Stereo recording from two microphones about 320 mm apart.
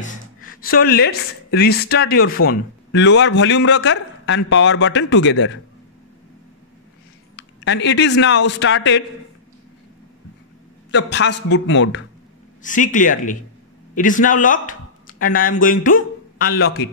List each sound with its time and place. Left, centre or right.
0.0 s a man's voice: left
7.3 s speech: left
10.9 s a man's voice: left
12.6 s speech: left
16.5 s a man's voice: left